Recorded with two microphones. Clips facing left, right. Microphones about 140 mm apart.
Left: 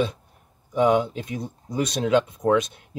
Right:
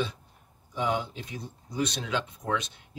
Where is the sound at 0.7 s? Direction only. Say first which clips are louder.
Left 10 dB; 65° left (ahead or behind).